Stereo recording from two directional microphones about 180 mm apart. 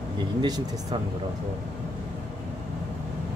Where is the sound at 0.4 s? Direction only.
20° right (ahead or behind).